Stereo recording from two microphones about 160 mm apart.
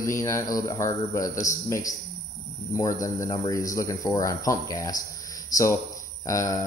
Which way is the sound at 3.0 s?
25° left (ahead or behind).